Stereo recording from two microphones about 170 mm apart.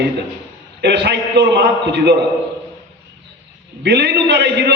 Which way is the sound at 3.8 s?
80° right.